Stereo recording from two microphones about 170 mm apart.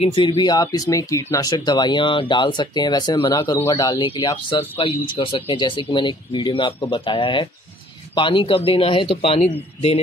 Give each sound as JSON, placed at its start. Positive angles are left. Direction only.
{"t": 0.0, "sound": "a man's voice", "side_deg": 35}